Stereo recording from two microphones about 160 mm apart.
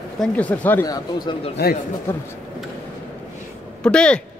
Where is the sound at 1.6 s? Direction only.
80° left.